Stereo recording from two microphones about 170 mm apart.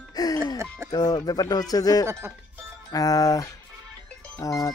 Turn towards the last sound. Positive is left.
turn(degrees=20)  # may be behind; listen again after turning